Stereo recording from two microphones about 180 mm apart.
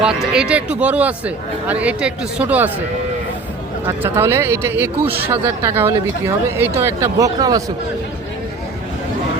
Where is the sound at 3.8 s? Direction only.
15° right (ahead or behind).